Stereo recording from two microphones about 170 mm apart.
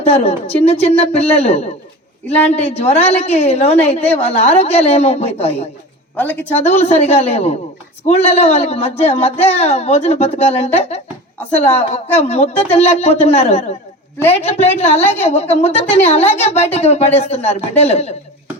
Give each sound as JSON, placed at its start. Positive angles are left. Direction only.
{"t": 0.1, "sound": "a woman's voice", "side_deg": 35}
{"t": 2.2, "sound": "a man's voice", "side_deg": 10}
{"t": 2.5, "sound": "a woman's voice", "side_deg": 40}
{"t": 6.1, "sound": "a man's voice", "side_deg": 10}
{"t": 6.6, "sound": "a woman's voice", "side_deg": 40}